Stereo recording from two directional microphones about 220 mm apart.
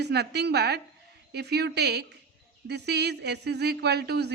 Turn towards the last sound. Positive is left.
turn(degrees=-50)  # may be behind; listen again after turning